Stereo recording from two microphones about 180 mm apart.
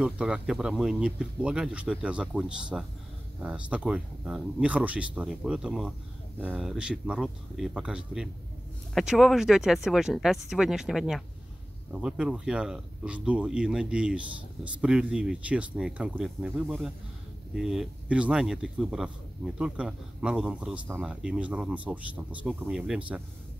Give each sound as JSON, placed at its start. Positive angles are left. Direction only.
{"t": 0.0, "sound": "speech", "side_deg": -5}